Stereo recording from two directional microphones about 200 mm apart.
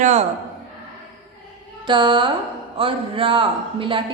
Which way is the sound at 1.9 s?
25° right (ahead or behind).